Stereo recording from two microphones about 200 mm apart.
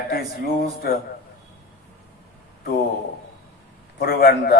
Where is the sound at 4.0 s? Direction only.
50° left (ahead or behind).